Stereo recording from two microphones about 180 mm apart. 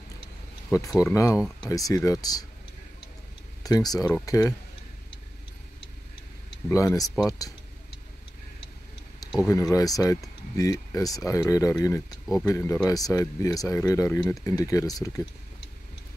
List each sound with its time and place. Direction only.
1.1 s speech: 15° left (ahead or behind)
3.6 s speech: 20° left (ahead or behind)
6.7 s speech: 20° left (ahead or behind)
9.2 s speech: 20° left (ahead or behind)